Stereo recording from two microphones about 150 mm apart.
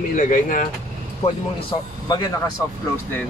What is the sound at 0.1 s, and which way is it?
Speech, 60° left (ahead or behind).